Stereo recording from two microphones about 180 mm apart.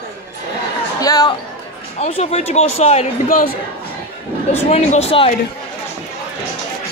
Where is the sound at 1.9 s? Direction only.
35° left (ahead or behind).